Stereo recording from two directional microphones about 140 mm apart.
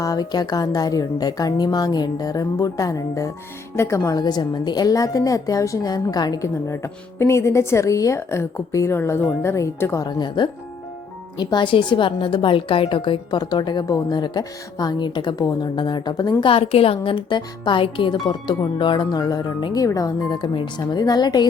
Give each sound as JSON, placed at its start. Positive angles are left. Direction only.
{"t": 0.0, "sound": "a woman's voice", "side_deg": 25}
{"t": 16.4, "sound": "speech", "side_deg": 40}